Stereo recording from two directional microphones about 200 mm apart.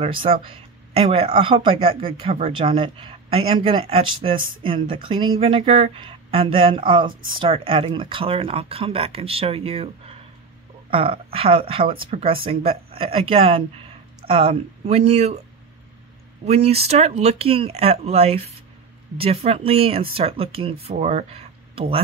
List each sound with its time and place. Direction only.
0.2 s speech: 30° right (ahead or behind)
16.4 s speech: 30° right (ahead or behind)